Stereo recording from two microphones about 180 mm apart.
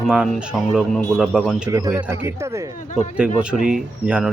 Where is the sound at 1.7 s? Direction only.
20° right (ahead or behind).